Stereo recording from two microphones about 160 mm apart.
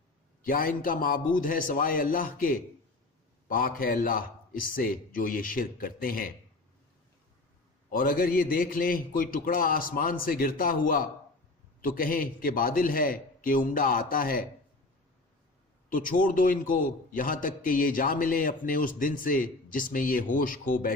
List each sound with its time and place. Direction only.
0.4 s a man's voice: 60° left (ahead or behind)
7.9 s a man's voice: 65° left (ahead or behind)
15.9 s a man's voice: 60° left (ahead or behind)